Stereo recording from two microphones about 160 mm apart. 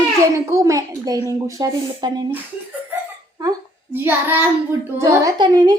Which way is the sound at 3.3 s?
20° right (ahead or behind).